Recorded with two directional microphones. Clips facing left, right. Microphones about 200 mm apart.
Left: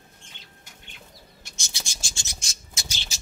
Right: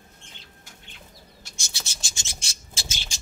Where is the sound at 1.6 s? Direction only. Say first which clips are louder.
Left 1 dB; 15° left (ahead or behind).